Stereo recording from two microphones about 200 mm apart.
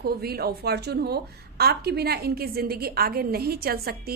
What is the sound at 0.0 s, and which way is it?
A woman's voice, 50° right (ahead or behind).